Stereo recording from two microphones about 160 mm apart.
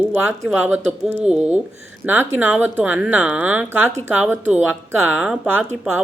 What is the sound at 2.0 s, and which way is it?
A woman's voice, 10° right (ahead or behind).